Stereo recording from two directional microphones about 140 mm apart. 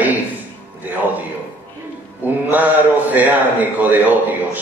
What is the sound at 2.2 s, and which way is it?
A man's voice, 10° right (ahead or behind).